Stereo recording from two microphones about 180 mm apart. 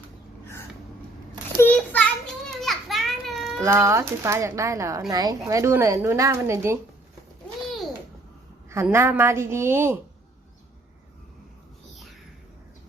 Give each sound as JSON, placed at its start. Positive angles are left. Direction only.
{"t": 1.5, "sound": "children playing", "side_deg": 10}
{"t": 3.6, "sound": "speech", "side_deg": -15}
{"t": 8.7, "sound": "speech", "side_deg": -15}